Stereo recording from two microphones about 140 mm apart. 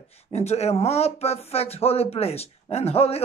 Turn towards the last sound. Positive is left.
turn(degrees=45)  # may be behind; listen again after turning